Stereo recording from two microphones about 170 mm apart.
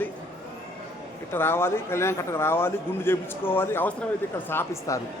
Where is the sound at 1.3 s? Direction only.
15° left (ahead or behind).